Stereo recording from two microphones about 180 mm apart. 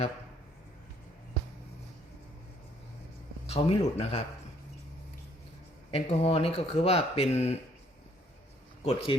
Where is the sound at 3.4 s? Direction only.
35° left (ahead or behind).